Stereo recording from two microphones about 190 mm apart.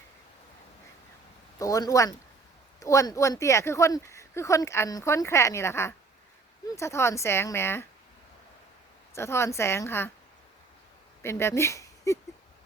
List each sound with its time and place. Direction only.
1.5 s speech: 20° left (ahead or behind)
9.1 s speech: 15° left (ahead or behind)
11.2 s speech: 15° left (ahead or behind)